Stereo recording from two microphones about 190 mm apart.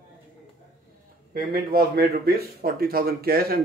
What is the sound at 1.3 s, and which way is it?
A man's voice, 50° right (ahead or behind).